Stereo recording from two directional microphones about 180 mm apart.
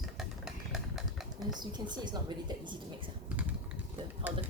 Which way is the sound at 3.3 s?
10° right (ahead or behind).